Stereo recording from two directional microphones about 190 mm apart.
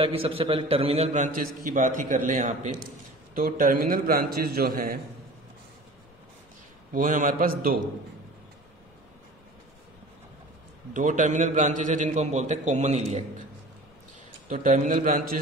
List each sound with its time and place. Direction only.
0.0 s a man's voice: 30° right (ahead or behind); by 5.0 s 50° right (ahead or behind)
6.9 s a man's voice: 45° right (ahead or behind)
10.9 s a man's voice: 40° right (ahead or behind)
14.5 s a man's voice: 45° right (ahead or behind)